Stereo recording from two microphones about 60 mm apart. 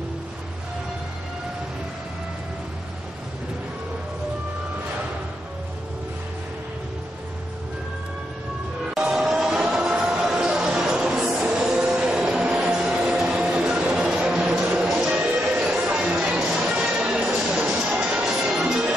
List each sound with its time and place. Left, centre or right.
8.9 s music: centre
11.4 s a sound: right
11.7 s music: centre
12.7 s vacuum cleaner: centre
13.4 s music: centre
15.9 s a sound: centre
17.4 s music: centre